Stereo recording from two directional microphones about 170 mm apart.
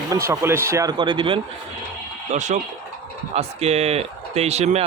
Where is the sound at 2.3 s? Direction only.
45° right (ahead or behind).